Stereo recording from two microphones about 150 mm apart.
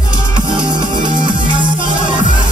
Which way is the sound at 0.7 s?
30° right (ahead or behind).